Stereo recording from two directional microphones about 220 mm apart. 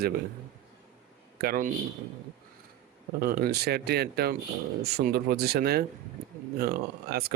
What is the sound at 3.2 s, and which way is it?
Speech, 45° right (ahead or behind).